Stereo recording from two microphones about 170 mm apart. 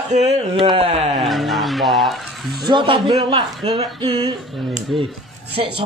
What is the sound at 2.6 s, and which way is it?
Speech, 30° right (ahead or behind).